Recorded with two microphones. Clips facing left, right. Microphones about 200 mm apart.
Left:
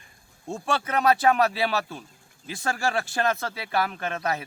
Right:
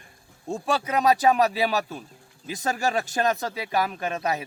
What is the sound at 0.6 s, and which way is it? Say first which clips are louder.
A man's voice: right 1 dB; 15° right (ahead or behind).